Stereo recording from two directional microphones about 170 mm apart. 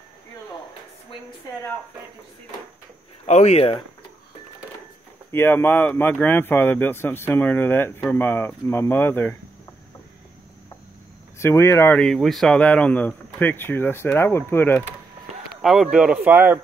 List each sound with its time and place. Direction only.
3.3 s speech: 40° left (ahead or behind)
5.3 s speech: 10° left (ahead or behind)
11.3 s speech: 15° left (ahead or behind)
12.0 s speech: centre (ahead or behind)
15.6 s speech: centre (ahead or behind)